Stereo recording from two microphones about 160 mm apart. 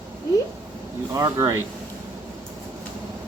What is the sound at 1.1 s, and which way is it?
Speech, 20° right (ahead or behind).